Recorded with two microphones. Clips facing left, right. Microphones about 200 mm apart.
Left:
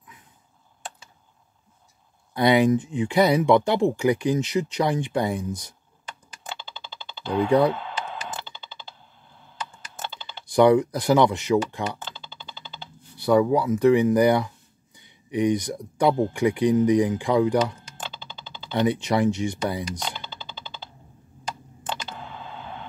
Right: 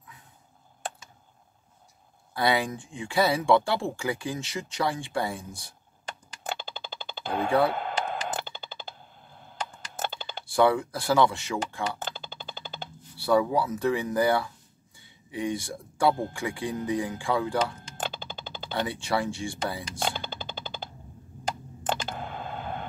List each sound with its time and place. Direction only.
2.3 s speech: 20° left (ahead or behind)
6.4 s a sound: 50° right (ahead or behind)
9.4 s computer keyboard: 50° right (ahead or behind)
10.5 s speech: 20° left (ahead or behind)
12.0 s music: 50° right (ahead or behind)
13.2 s speech: 15° left (ahead or behind)
18.0 s music: 50° right (ahead or behind)
18.8 s speech: 20° left (ahead or behind)
20.0 s music: 50° right (ahead or behind)
21.8 s a sound: 50° right (ahead or behind)